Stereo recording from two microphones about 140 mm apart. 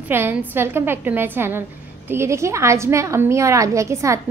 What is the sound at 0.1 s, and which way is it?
A woman's voice, 15° right (ahead or behind).